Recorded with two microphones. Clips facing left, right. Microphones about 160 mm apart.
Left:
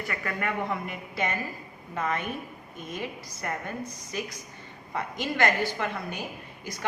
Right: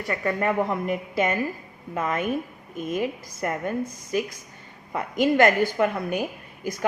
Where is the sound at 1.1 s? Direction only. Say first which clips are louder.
Right 5 dB; 50° right (ahead or behind).